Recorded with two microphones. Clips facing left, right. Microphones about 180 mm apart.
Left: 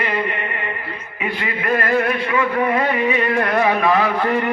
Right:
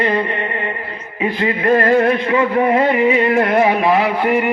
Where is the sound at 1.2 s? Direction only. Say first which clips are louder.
Right 7 dB; 30° right (ahead or behind).